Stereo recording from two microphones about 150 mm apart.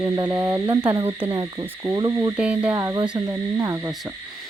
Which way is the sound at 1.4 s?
25° right (ahead or behind).